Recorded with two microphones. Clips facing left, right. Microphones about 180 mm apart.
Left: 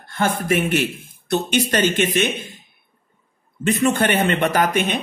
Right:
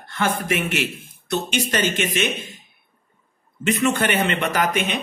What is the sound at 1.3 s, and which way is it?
Speech, 60° left (ahead or behind).